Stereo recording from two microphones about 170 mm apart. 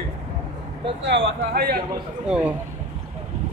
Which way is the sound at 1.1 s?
80° right.